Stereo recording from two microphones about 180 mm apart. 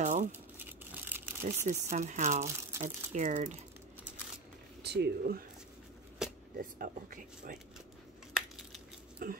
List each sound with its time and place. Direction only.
0.0 s crumpling: 45° right (ahead or behind)
0.3 s crumpling: 10° right (ahead or behind)
1.7 s speech: 45° right (ahead or behind)
4.8 s speech: 65° right (ahead or behind)
6.2 s a sound: 5° right (ahead or behind)
6.6 s speech: 50° right (ahead or behind)
8.3 s a sound: 5° right (ahead or behind)
9.2 s speech: 50° right (ahead or behind)